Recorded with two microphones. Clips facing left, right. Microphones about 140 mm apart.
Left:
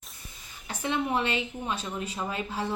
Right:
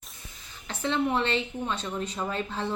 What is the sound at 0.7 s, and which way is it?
Speech, 15° left (ahead or behind).